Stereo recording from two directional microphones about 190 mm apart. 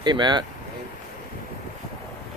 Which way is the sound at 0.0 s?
25° right (ahead or behind).